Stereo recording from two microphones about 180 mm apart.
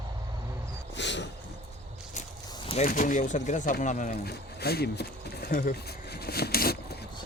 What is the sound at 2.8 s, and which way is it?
Speech, 50° left (ahead or behind).